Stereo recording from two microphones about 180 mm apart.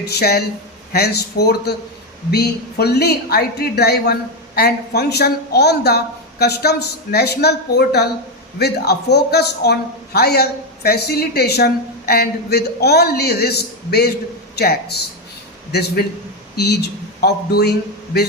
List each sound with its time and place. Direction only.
0.0 s a man's voice: 60° left (ahead or behind)